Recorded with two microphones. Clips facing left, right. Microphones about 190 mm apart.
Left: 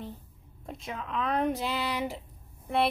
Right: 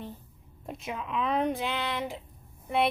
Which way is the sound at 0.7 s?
5° right (ahead or behind).